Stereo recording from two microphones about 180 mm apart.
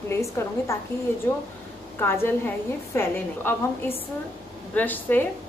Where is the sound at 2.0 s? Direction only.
15° left (ahead or behind).